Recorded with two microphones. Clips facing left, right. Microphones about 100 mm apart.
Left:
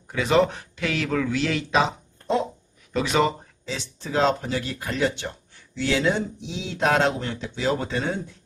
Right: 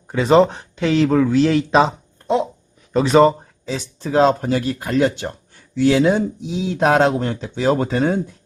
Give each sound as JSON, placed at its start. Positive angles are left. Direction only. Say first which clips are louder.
{"t": 0.1, "sound": "speech", "louder": "right 7 dB", "side_deg": -30}
{"t": 2.9, "sound": "speech", "louder": "right 9 dB", "side_deg": -35}